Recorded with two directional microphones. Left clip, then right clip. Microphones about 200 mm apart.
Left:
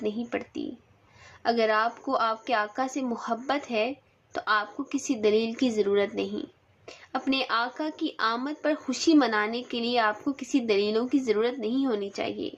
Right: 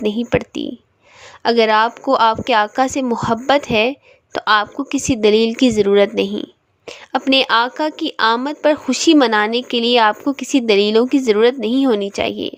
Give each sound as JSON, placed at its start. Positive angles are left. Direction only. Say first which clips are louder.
{"t": 0.0, "sound": "a woman's voice", "louder": "right 13 dB", "side_deg": -50}